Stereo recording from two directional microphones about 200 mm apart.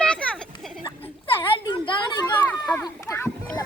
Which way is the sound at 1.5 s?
25° left (ahead or behind).